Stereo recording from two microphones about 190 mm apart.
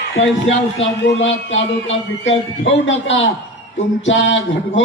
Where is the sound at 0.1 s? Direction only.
90° left.